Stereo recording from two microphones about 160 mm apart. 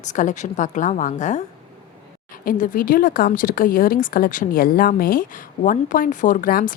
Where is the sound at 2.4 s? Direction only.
60° left (ahead or behind).